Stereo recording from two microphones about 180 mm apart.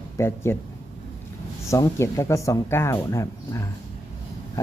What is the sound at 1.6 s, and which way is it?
Speech, 15° left (ahead or behind).